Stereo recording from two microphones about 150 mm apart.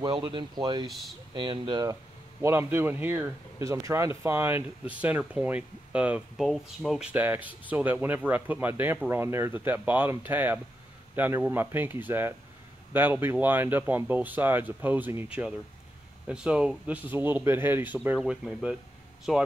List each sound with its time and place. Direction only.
0.0 s speech: 35° right (ahead or behind)
0.8 s speech: centre (ahead or behind)
1.3 s speech: 35° right (ahead or behind)
2.4 s speech: 15° right (ahead or behind)
16.3 s speech: 5° right (ahead or behind)